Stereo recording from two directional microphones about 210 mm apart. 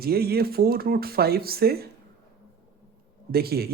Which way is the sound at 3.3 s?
50° right (ahead or behind).